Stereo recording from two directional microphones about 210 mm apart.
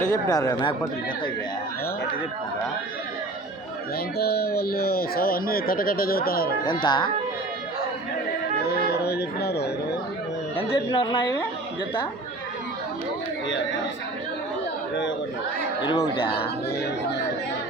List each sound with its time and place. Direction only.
0.1 s speech: 15° left (ahead or behind)
4.2 s speech: 50° left (ahead or behind)
6.8 s a woman's voice: 20° left (ahead or behind)
8.6 s a sound: 50° left (ahead or behind)
10.6 s a woman's voice: 25° left (ahead or behind)
15.8 s a woman's voice: 20° left (ahead or behind)